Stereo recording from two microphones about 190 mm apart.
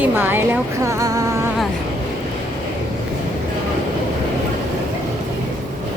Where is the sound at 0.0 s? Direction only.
10° right (ahead or behind).